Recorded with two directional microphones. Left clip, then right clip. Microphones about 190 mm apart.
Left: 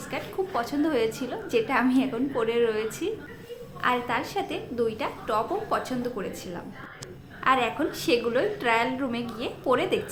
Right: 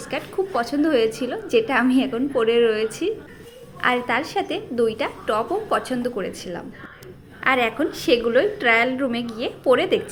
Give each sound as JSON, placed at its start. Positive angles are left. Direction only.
{"t": 0.1, "sound": "a woman's voice", "side_deg": -25}